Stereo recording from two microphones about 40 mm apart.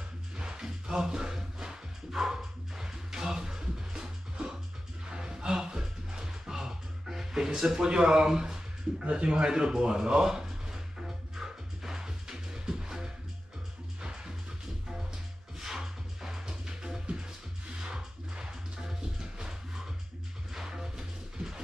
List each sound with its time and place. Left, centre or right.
0.4 s music: centre
9.1 s a sound: right
14.0 s music: centre
15.6 s music: centre